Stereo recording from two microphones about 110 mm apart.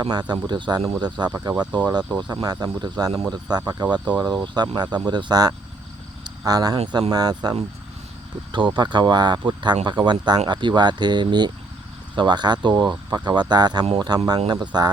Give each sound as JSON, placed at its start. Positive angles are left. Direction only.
{"t": 0.0, "sound": "speech", "side_deg": -40}
{"t": 8.5, "sound": "speech", "side_deg": -45}